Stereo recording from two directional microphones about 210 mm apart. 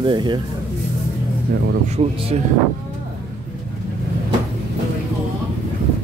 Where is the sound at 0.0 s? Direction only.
20° right (ahead or behind).